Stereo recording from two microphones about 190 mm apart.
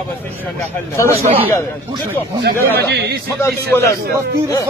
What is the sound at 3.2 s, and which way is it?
Speech, 15° left (ahead or behind).